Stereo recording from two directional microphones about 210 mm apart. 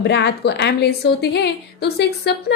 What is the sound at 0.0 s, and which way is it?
A woman's voice, 55° left (ahead or behind).